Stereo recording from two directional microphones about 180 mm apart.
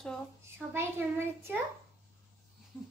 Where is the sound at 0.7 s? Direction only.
15° right (ahead or behind).